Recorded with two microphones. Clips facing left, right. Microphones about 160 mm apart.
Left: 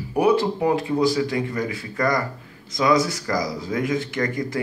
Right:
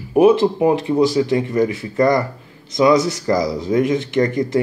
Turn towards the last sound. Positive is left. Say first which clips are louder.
# right 7 dB
turn(degrees=-25)  # may be behind; listen again after turning